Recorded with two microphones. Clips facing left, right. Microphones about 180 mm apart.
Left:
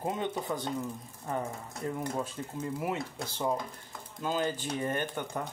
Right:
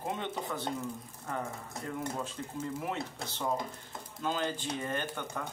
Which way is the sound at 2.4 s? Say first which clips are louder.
Left 2 dB; 15° left (ahead or behind).